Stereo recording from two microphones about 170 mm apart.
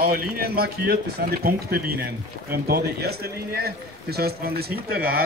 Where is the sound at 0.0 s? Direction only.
60° right (ahead or behind).